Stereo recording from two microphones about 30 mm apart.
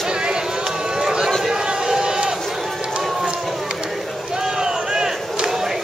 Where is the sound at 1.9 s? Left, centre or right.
Right.